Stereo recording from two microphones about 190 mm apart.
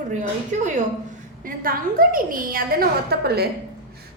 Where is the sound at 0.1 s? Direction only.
40° right (ahead or behind).